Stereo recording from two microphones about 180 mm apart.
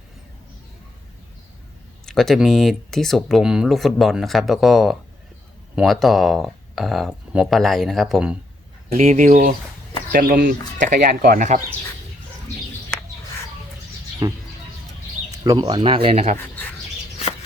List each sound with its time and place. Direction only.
2.0 s speech: centre (ahead or behind)
9.0 s speech: 40° right (ahead or behind)
14.2 s speech: 20° right (ahead or behind); by 16.4 s 35° right (ahead or behind)